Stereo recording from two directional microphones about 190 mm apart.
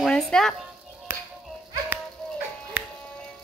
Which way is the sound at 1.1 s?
10° right (ahead or behind).